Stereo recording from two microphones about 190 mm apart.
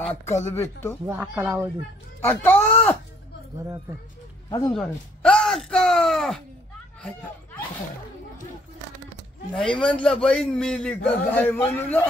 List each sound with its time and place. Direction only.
0.0 s speech: 35° left (ahead or behind)
1.0 s speech: 15° right (ahead or behind)
2.2 s a man's voice: 10° left (ahead or behind)
4.5 s speech: 20° left (ahead or behind)
4.7 s speech: 5° left (ahead or behind)
9.5 s a man's voice: 5° left (ahead or behind)